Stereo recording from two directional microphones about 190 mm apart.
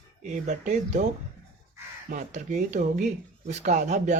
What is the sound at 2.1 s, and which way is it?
Speech, 40° right (ahead or behind).